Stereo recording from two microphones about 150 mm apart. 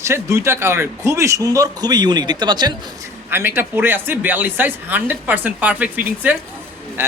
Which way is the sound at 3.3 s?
15° right (ahead or behind).